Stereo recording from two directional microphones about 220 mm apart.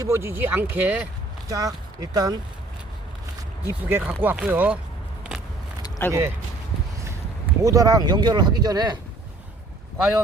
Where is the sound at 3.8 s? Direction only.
10° right (ahead or behind).